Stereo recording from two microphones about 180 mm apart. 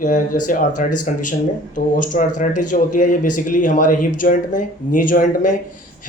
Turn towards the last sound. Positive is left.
turn(degrees=45)  # may be behind; listen again after turning